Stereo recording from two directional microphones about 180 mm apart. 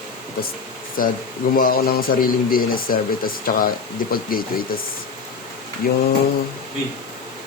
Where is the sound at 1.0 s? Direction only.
50° left (ahead or behind).